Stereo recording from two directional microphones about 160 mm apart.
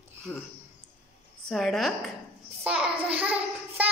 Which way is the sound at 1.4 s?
Centre (ahead or behind).